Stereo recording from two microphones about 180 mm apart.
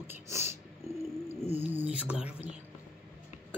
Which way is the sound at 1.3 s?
35° left (ahead or behind).